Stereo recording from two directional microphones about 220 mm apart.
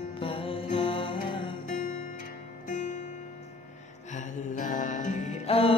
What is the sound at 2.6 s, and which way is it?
Music, 35° left (ahead or behind).